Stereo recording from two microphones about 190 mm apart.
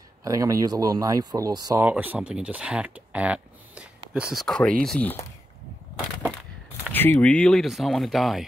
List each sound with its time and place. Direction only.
0.2 s speech: 20° right (ahead or behind)
1.9 s speech: 10° right (ahead or behind); by 5.2 s 5° left (ahead or behind)
6.9 s speech: 10° left (ahead or behind)